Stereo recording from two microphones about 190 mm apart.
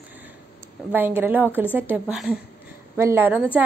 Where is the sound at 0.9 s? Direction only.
10° right (ahead or behind).